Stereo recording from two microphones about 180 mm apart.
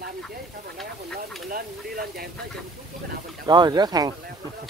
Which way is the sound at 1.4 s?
55° right (ahead or behind).